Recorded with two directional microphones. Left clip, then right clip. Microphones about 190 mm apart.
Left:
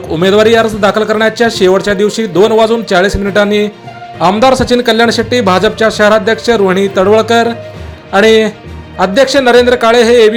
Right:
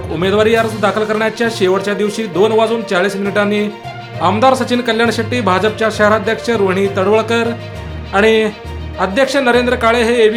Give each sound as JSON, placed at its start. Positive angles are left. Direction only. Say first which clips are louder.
{"t": 0.2, "sound": "a man's voice", "louder": "left 5 dB", "side_deg": 30}